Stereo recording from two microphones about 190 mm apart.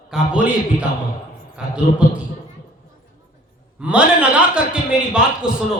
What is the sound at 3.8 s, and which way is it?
A man's voice, 5° right (ahead or behind).